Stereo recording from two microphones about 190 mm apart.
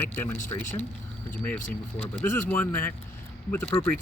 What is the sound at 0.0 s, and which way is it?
Speech, 10° left (ahead or behind).